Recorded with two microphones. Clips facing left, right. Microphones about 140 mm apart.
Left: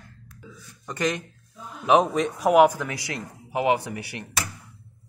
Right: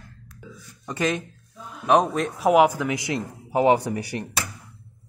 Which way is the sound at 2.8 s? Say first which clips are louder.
Right 6 dB; 20° right (ahead or behind).